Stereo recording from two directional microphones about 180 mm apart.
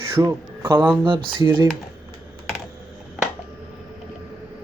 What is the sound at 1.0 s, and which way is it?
Speech, 25° right (ahead or behind).